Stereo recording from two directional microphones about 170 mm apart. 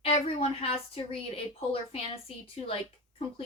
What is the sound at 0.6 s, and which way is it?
A woman's voice, 35° left (ahead or behind).